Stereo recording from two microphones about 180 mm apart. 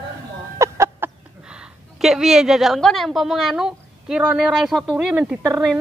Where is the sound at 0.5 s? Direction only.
15° right (ahead or behind).